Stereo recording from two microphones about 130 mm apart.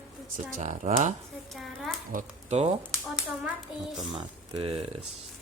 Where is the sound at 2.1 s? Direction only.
55° right (ahead or behind).